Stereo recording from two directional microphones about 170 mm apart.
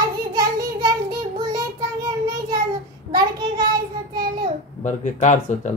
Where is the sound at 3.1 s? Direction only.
25° right (ahead or behind).